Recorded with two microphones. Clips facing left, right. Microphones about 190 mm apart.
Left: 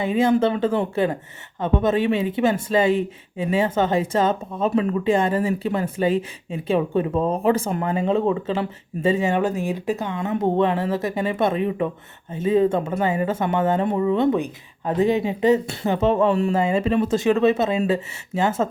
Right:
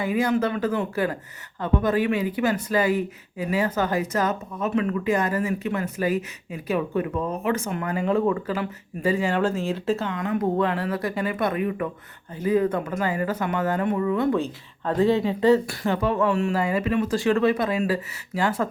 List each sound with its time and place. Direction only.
0.0 s speech: 25° left (ahead or behind)
10.2 s speech: 25° left (ahead or behind)